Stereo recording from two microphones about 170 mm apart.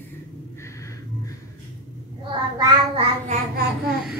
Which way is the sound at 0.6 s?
15° left (ahead or behind).